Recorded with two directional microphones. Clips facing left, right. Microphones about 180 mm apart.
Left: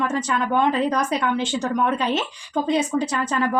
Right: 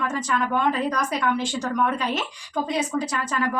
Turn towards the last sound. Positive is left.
turn(degrees=25)  # may be behind; listen again after turning